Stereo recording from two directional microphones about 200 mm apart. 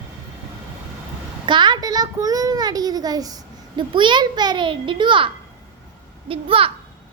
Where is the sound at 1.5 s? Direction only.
20° right (ahead or behind).